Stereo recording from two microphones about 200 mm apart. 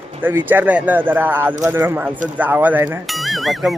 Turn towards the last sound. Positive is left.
turn(degrees=0)  # may be behind; listen again after turning